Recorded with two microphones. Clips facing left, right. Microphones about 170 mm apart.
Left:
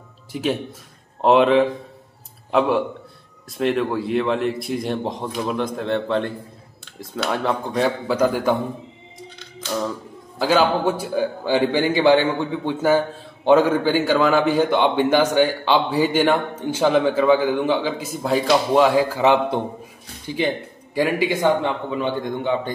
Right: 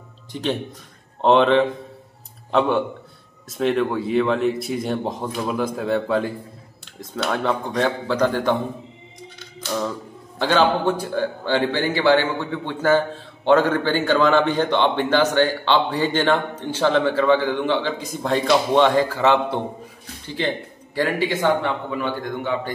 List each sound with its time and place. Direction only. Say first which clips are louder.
0.3 s a man's voice: left 1 dB; 5° left (ahead or behind)
10.4 s a man's voice: even; 10° left (ahead or behind)